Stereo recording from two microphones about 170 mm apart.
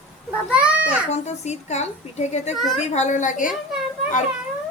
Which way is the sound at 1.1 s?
40° left (ahead or behind).